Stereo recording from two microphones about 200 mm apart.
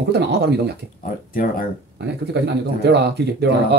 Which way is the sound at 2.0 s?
60° right (ahead or behind).